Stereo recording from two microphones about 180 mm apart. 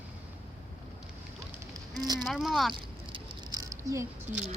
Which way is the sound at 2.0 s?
20° right (ahead or behind).